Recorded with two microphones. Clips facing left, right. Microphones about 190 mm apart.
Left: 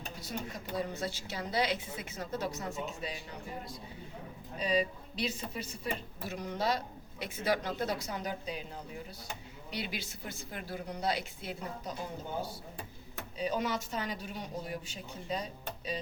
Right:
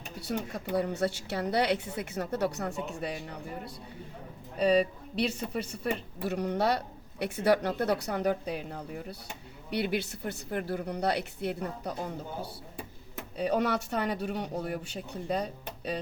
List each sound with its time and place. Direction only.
0.2 s speech: 65° right (ahead or behind)
4.5 s speech: 60° right (ahead or behind)
13.3 s speech: 60° right (ahead or behind)